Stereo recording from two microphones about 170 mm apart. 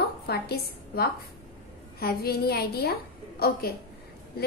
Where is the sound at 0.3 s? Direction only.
65° left (ahead or behind).